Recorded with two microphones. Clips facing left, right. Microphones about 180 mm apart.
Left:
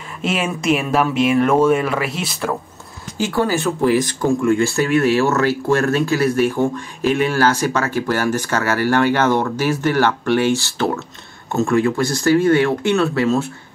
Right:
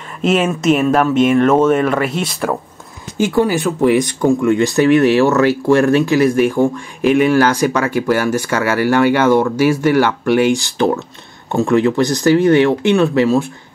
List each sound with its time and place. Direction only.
0.2 s speech: 5° left (ahead or behind)
3.2 s speech: 20° right (ahead or behind)